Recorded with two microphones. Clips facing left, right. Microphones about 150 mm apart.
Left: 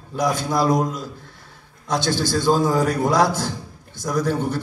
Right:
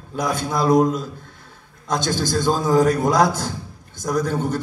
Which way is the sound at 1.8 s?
50° right (ahead or behind).